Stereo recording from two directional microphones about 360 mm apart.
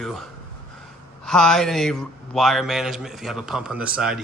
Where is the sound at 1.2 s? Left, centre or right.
Centre.